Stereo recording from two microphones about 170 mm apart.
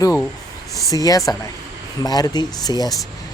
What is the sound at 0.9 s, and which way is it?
Speech, 20° left (ahead or behind).